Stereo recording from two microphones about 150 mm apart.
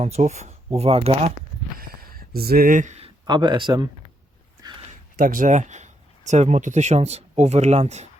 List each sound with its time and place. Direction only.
0.0 s speech: 45° right (ahead or behind)
1.8 s a sound: 85° right; by 3.1 s 50° right (ahead or behind)
3.2 s speech: 30° right (ahead or behind)
5.1 s speech: 65° right (ahead or behind); by 8.0 s 45° right (ahead or behind)